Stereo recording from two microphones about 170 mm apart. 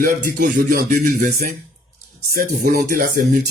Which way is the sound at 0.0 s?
55° right (ahead or behind).